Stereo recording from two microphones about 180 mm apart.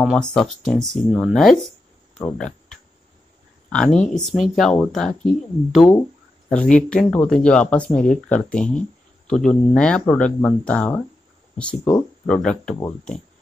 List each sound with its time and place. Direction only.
0.0 s speech: centre (ahead or behind)
2.1 s cricket: 5° left (ahead or behind)
3.7 s speech: 5° left (ahead or behind)